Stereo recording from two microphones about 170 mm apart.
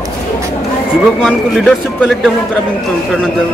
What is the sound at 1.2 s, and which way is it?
A man's voice, centre (ahead or behind).